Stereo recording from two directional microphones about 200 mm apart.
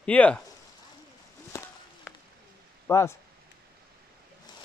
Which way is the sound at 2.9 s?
15° left (ahead or behind).